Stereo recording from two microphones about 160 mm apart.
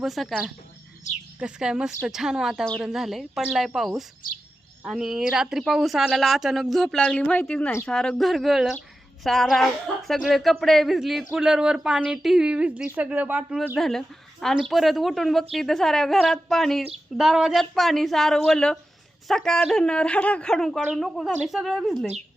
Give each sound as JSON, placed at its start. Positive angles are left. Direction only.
{"t": 0.0, "sound": "a woman's voice", "side_deg": 0}
{"t": 4.2, "sound": "speech", "side_deg": 60}
{"t": 4.8, "sound": "a woman's voice", "side_deg": -5}
{"t": 13.7, "sound": "a woman's voice", "side_deg": 0}